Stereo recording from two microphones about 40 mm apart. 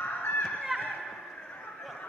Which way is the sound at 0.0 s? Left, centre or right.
Left.